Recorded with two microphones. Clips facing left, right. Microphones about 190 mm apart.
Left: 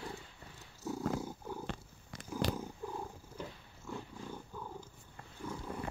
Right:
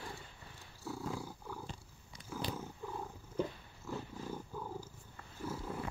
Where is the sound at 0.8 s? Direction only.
20° left (ahead or behind).